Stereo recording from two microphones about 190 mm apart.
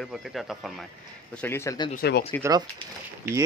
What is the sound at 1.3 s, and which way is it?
Speech, 10° left (ahead or behind).